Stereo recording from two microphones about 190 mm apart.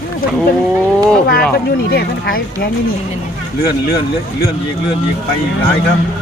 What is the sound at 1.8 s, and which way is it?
Speech, 55° left (ahead or behind).